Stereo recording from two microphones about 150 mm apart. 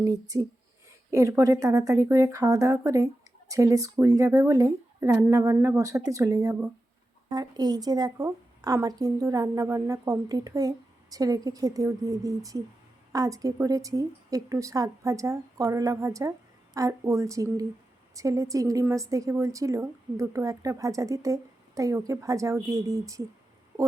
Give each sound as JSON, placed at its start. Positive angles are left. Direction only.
{"t": 0.0, "sound": "speech", "side_deg": -20}